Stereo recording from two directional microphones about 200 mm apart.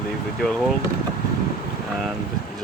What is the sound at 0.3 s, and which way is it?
Speech, centre (ahead or behind).